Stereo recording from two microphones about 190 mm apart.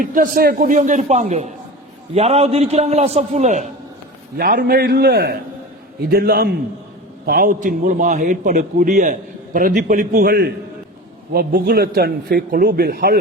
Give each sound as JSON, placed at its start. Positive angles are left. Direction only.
{"t": 0.0, "sound": "a man's voice", "side_deg": -45}
{"t": 4.4, "sound": "a man's voice", "side_deg": -50}